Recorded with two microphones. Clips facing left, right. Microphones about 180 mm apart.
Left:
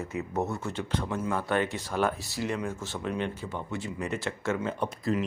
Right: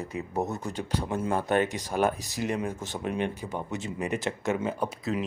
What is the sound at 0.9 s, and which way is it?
Speech, 10° right (ahead or behind).